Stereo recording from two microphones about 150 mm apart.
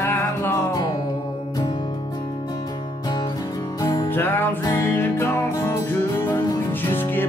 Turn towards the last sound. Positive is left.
turn(degrees=15)  # may be behind; listen again after turning